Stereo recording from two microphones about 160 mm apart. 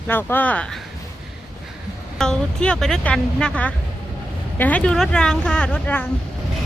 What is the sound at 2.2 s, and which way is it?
Speech, 5° left (ahead or behind).